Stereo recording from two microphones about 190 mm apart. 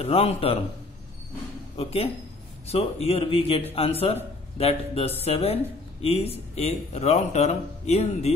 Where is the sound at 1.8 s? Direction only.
30° left (ahead or behind).